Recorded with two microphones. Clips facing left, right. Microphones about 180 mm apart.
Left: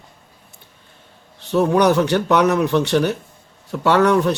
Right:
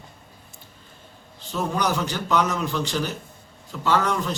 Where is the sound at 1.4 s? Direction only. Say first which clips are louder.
Left 10 dB; 65° left (ahead or behind).